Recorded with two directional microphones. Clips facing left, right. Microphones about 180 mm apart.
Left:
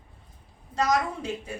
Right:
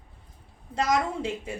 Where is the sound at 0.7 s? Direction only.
25° right (ahead or behind).